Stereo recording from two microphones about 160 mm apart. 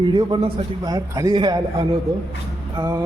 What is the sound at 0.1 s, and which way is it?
A man's voice, 30° right (ahead or behind).